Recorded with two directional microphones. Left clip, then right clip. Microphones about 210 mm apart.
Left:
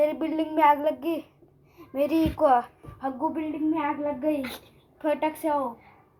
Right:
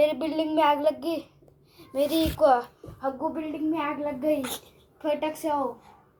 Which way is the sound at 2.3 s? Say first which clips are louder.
Right 1 dB; 30° left (ahead or behind).